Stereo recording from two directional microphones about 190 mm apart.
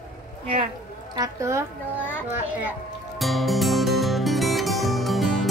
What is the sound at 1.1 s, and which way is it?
Speech, 15° right (ahead or behind).